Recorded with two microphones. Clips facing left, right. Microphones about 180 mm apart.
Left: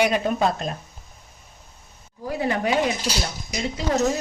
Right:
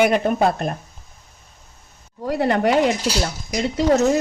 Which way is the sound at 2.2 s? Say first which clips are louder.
Right 5 dB; 70° right (ahead or behind).